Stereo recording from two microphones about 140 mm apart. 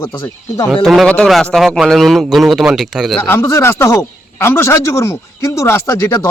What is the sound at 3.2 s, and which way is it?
Speech, 20° left (ahead or behind).